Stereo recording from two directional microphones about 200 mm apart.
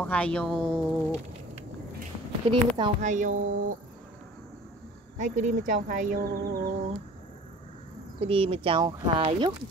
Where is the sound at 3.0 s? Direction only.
40° right (ahead or behind).